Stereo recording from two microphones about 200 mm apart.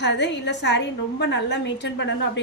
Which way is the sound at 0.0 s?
60° left (ahead or behind).